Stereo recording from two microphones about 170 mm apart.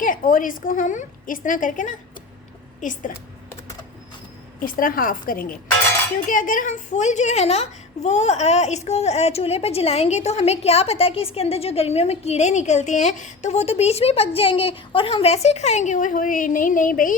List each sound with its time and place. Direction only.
0.0 s a woman's voice: 50° left (ahead or behind)
4.6 s a woman's voice: 55° left (ahead or behind)